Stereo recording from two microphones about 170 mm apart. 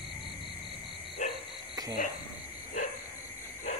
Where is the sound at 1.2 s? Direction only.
45° left (ahead or behind).